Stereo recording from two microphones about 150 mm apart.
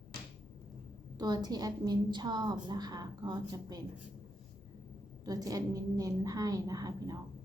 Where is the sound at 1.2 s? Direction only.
25° right (ahead or behind).